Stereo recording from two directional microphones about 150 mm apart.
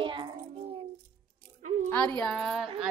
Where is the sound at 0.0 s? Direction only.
35° right (ahead or behind).